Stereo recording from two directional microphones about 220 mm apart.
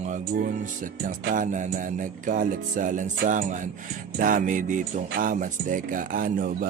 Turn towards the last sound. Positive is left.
turn(degrees=-40)  # may be behind; listen again after turning